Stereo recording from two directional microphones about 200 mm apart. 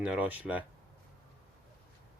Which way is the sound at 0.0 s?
5° right (ahead or behind).